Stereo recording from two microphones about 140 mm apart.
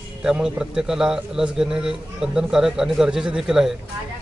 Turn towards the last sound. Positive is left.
turn(degrees=-5)  # may be behind; listen again after turning